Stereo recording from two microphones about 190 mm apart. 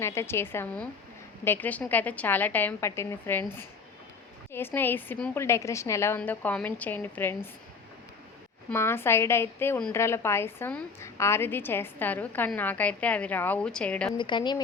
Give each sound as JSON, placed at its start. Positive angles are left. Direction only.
{"t": 0.0, "sound": "a woman's voice", "side_deg": 15}
{"t": 8.7, "sound": "a woman's voice", "side_deg": 15}
{"t": 14.2, "sound": "speech", "side_deg": 25}